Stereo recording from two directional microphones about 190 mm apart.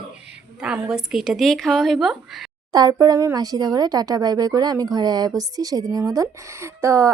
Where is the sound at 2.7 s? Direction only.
20° right (ahead or behind).